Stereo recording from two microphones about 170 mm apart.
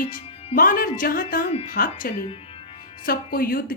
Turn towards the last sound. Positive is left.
turn(degrees=60)  # may be behind; listen again after turning